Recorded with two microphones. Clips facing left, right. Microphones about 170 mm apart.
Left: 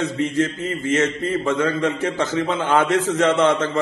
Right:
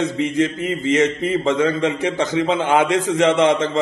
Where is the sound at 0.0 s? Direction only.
20° right (ahead or behind).